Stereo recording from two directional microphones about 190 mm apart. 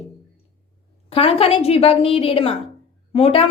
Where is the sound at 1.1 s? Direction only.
30° left (ahead or behind).